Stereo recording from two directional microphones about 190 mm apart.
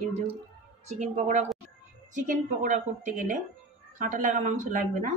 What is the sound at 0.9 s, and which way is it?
A woman's voice, 35° right (ahead or behind).